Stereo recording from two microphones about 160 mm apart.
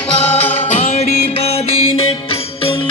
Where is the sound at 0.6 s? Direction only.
40° left (ahead or behind).